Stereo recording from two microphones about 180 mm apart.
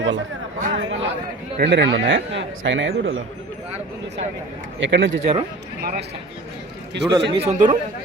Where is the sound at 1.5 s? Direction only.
70° right (ahead or behind); by 3.2 s 90° right.